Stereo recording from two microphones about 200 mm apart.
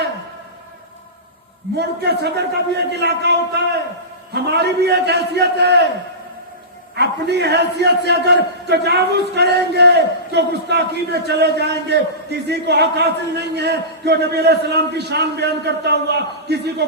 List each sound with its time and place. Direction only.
1.8 s a man's voice: 55° right (ahead or behind)
4.4 s a man's voice: 55° right (ahead or behind)
6.9 s a man's voice: 55° right (ahead or behind)